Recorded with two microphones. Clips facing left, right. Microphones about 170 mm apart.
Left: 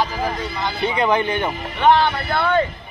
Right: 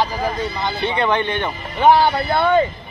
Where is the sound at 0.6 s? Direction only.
25° right (ahead or behind).